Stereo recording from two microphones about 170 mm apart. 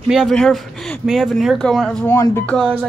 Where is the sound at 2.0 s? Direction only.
15° left (ahead or behind).